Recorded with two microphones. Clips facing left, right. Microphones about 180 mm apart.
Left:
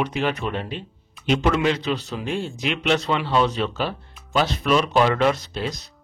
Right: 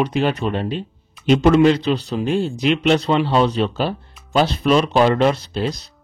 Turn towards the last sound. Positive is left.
turn(degrees=-35)  # may be behind; listen again after turning